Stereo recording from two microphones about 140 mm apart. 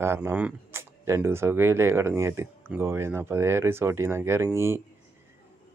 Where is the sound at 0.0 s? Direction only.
15° right (ahead or behind).